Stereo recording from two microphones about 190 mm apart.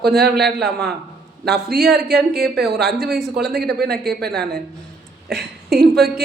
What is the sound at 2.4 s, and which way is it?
A man's voice, centre (ahead or behind).